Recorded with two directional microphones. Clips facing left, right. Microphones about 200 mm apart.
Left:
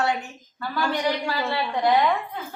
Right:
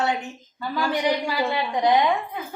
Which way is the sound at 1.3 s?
15° right (ahead or behind).